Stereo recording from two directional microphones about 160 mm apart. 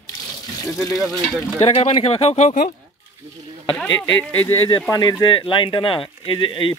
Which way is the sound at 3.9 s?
15° left (ahead or behind).